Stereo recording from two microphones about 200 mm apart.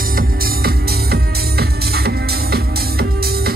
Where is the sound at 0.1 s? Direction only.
45° right (ahead or behind).